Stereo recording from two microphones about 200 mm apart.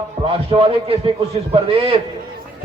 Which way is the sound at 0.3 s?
25° right (ahead or behind).